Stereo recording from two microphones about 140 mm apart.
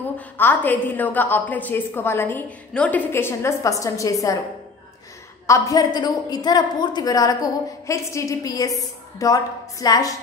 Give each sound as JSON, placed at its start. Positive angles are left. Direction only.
{"t": 0.2, "sound": "a woman's voice", "side_deg": 10}
{"t": 5.5, "sound": "a woman's voice", "side_deg": 25}